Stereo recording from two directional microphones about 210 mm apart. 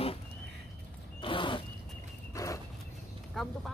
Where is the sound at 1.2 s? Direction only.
25° left (ahead or behind).